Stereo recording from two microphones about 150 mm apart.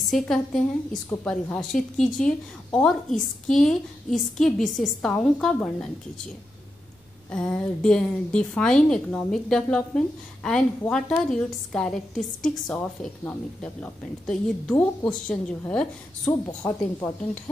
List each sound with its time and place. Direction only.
0.0 s a woman's voice: centre (ahead or behind)
7.2 s a woman's voice: 5° left (ahead or behind)
16.4 s speech: 20° left (ahead or behind)